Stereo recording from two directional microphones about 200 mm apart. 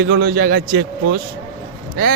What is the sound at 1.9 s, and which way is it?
Speech, 45° right (ahead or behind).